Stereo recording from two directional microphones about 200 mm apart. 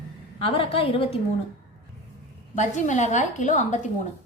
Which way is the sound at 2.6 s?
35° left (ahead or behind).